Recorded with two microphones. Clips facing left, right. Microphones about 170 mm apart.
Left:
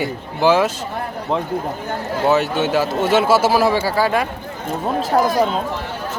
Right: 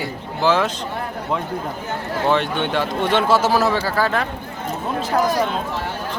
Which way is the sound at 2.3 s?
5° left (ahead or behind).